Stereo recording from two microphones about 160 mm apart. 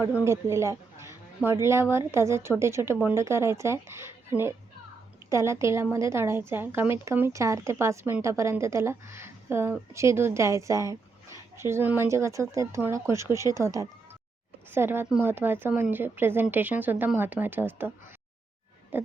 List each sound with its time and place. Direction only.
0.1 s a woman's voice: 15° right (ahead or behind)
5.3 s a woman's voice: 20° right (ahead or behind)
18.9 s a sound: 10° right (ahead or behind)